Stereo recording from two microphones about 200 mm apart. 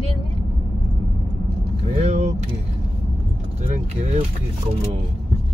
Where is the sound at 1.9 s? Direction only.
35° right (ahead or behind).